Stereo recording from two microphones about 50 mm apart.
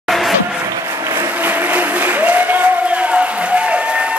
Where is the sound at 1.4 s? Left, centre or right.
Right.